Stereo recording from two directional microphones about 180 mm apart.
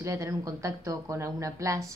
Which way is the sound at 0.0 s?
15° right (ahead or behind).